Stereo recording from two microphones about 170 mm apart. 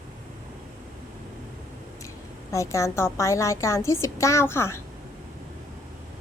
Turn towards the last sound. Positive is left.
turn(degrees=15)  # may be behind; listen again after turning